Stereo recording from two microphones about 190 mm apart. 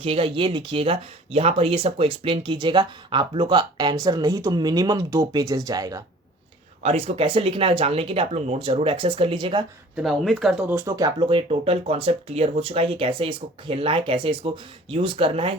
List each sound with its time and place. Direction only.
0.0 s speech: 30° right (ahead or behind)
6.8 s speech: 30° right (ahead or behind)
9.9 s speech: centre (ahead or behind); by 15.5 s 30° right (ahead or behind)